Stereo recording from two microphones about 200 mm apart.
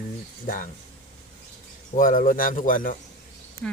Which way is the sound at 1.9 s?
40° left (ahead or behind).